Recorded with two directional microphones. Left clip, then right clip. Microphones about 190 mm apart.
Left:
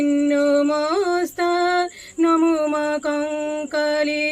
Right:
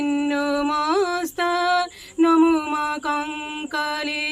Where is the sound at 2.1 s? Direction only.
20° right (ahead or behind).